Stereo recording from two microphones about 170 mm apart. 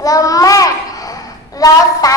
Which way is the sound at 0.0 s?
20° left (ahead or behind).